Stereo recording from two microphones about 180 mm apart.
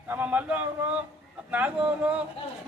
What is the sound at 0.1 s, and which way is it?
A man's voice, 10° right (ahead or behind).